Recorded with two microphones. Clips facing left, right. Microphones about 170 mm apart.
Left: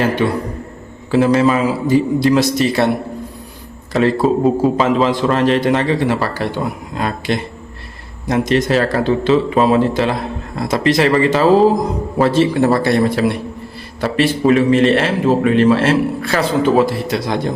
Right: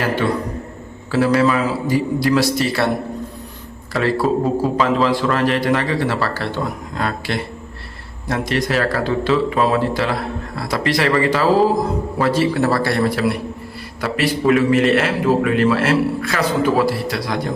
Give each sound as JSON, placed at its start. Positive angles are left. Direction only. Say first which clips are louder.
{"t": 0.0, "sound": "a man's voice", "louder": "left 3 dB", "side_deg": 20}
{"t": 3.9, "sound": "a man's voice", "louder": "left 4 dB", "side_deg": 20}